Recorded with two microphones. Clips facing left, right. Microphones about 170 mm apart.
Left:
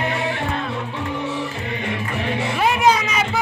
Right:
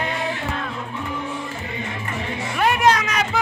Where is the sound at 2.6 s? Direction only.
5° left (ahead or behind).